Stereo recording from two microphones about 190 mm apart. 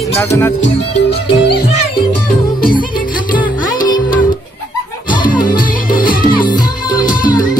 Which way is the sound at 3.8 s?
20° left (ahead or behind).